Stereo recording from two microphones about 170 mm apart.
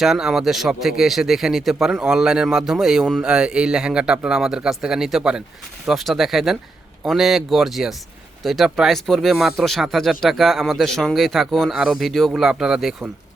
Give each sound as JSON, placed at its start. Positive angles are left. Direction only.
{"t": 0.0, "sound": "a man's voice", "side_deg": 0}